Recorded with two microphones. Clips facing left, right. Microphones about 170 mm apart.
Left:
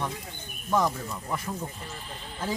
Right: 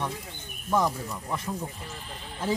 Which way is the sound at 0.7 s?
Centre (ahead or behind).